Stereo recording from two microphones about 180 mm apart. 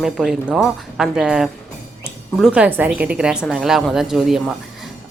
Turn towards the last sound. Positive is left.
turn(degrees=0)  # may be behind; listen again after turning